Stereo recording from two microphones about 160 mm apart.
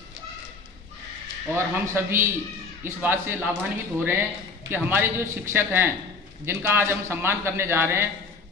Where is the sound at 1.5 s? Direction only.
15° right (ahead or behind).